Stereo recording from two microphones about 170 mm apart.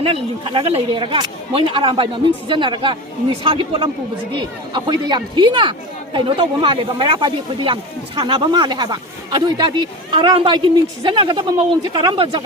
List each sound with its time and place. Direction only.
0.0 s speech: 35° right (ahead or behind)